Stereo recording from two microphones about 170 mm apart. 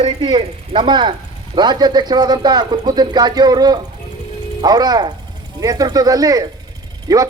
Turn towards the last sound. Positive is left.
turn(degrees=-20)  # may be behind; listen again after turning